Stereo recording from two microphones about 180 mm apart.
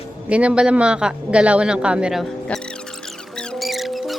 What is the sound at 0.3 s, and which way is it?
Speech, 5° right (ahead or behind).